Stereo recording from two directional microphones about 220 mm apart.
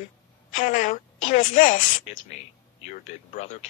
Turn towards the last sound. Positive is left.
turn(degrees=30)  # may be behind; listen again after turning